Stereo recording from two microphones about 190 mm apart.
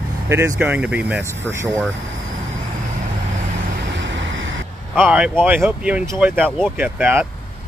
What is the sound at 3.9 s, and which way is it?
Vehicle, 75° right (ahead or behind).